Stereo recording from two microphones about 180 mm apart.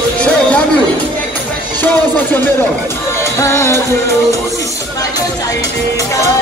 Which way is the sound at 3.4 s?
15° left (ahead or behind).